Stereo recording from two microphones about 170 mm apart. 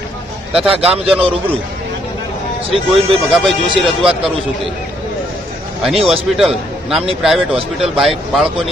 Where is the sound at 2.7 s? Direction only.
35° right (ahead or behind).